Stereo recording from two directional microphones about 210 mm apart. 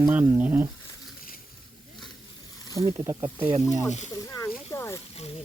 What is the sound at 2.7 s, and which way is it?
Speech, 15° right (ahead or behind).